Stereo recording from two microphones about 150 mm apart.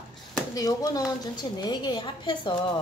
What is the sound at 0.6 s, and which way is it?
A woman's voice, 25° left (ahead or behind).